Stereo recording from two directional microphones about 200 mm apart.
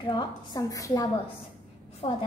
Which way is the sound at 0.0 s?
20° left (ahead or behind).